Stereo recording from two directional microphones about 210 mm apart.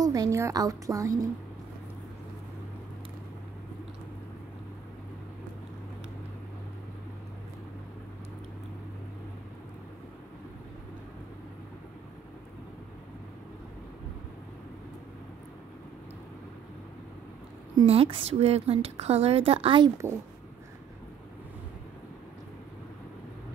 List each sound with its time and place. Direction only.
0.0 s a woman's voice: 15° right (ahead or behind)
17.7 s a woman's voice: 25° right (ahead or behind)